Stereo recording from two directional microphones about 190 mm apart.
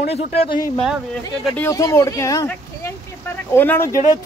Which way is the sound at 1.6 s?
15° left (ahead or behind).